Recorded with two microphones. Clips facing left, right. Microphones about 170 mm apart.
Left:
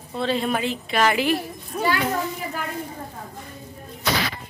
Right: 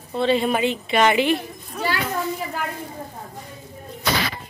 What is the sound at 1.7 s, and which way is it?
Children playing, 25° left (ahead or behind).